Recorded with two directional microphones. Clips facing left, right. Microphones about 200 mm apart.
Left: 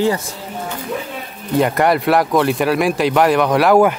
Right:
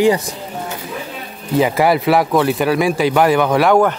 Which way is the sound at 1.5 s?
Centre (ahead or behind).